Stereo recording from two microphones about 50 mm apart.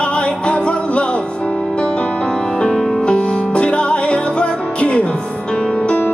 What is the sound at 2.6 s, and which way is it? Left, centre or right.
Music, centre.